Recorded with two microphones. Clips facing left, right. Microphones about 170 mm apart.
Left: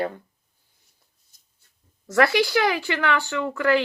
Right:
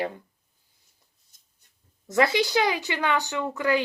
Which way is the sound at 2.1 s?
20° right (ahead or behind).